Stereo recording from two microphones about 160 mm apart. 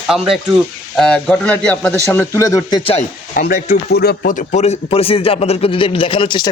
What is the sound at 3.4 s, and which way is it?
Speech, 65° left (ahead or behind).